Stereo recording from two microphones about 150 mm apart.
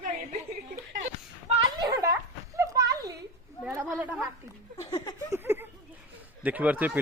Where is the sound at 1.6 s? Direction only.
25° right (ahead or behind).